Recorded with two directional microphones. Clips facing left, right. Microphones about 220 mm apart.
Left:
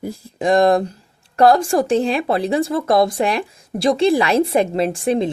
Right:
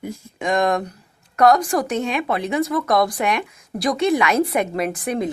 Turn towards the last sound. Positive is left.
turn(degrees=30)  # may be behind; listen again after turning